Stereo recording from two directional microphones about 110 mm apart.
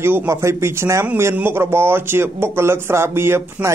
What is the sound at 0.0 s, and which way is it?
Speech, 25° right (ahead or behind).